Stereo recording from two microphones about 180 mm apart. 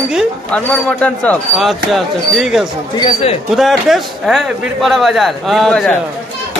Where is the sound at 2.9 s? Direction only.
30° left (ahead or behind).